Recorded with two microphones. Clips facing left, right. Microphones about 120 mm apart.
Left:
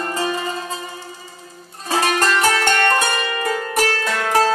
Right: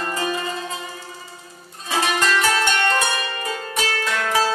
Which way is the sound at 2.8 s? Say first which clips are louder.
Left 3 dB; 55° left (ahead or behind).